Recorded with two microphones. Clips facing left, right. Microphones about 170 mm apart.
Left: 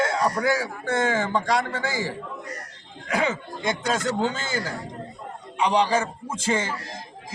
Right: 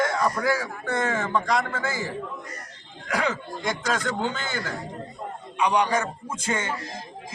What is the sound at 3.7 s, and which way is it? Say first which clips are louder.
Speech: left 2 dB; 25° left (ahead or behind).